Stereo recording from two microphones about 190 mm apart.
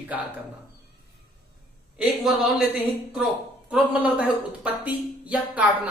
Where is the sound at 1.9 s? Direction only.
5° right (ahead or behind).